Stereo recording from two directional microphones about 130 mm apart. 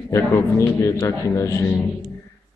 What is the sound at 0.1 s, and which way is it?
A man's voice, 25° left (ahead or behind).